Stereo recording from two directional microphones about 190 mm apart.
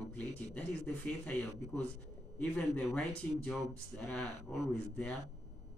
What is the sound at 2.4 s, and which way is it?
Speech, 5° left (ahead or behind).